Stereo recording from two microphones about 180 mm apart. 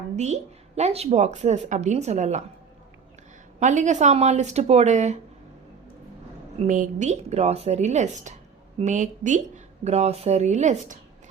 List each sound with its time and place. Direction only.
0.8 s a woman's voice: 35° right (ahead or behind)
3.6 s a woman's voice: 40° right (ahead or behind)
6.6 s a woman's voice: 40° right (ahead or behind)